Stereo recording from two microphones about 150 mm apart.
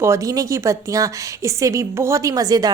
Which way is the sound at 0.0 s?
20° right (ahead or behind).